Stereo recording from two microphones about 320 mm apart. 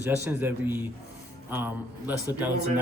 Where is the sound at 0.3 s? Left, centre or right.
Centre.